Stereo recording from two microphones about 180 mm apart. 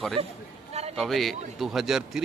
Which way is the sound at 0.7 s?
35° right (ahead or behind).